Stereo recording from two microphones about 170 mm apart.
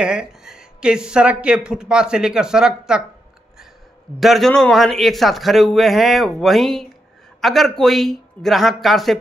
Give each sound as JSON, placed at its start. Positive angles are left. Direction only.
{"t": 0.0, "sound": "speech", "side_deg": -5}
{"t": 4.2, "sound": "speech", "side_deg": 0}